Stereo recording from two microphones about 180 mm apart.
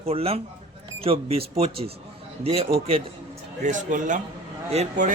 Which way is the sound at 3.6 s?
45° right (ahead or behind).